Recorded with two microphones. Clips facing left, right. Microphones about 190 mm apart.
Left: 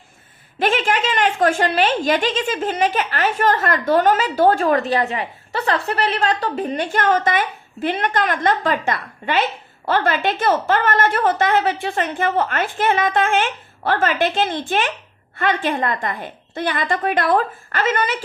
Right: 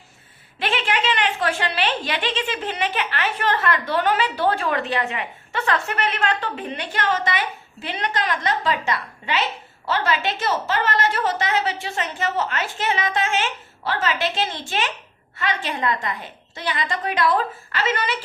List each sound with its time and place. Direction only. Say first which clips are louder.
0.6 s a woman's voice: left 4 dB; 45° left (ahead or behind)